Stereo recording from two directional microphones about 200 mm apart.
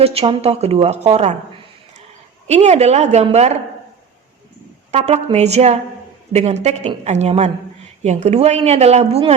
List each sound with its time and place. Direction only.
0.0 s a woman's voice: 30° right (ahead or behind)
2.5 s a woman's voice: 35° right (ahead or behind)
4.9 s a woman's voice: 35° right (ahead or behind)